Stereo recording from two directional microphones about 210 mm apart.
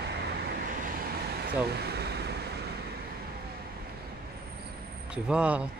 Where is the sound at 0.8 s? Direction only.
45° right (ahead or behind).